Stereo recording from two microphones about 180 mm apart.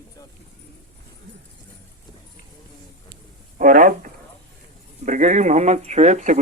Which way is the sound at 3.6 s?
45° right (ahead or behind).